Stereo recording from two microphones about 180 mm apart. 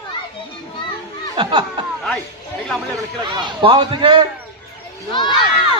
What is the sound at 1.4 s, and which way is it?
Speech, 25° right (ahead or behind).